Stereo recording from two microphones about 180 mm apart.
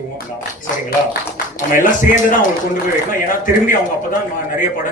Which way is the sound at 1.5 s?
50° left (ahead or behind).